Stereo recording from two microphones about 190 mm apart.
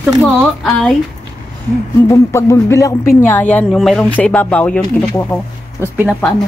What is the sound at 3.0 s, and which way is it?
Speech, 45° left (ahead or behind).